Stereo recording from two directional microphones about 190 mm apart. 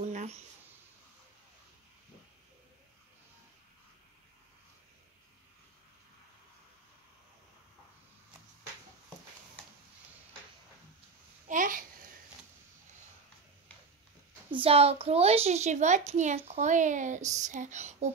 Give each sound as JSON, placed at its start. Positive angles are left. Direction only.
{"t": 0.0, "sound": "a sound", "side_deg": -40}
{"t": 11.4, "sound": "babbling", "side_deg": -45}
{"t": 14.5, "sound": "a woman's voice", "side_deg": -30}